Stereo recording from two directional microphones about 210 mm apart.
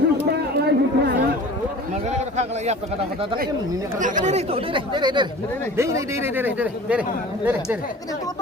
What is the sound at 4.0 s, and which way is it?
Speech, 35° right (ahead or behind).